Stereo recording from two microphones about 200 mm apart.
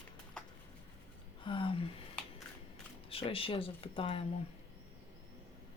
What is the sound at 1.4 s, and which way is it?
Speech, 25° left (ahead or behind).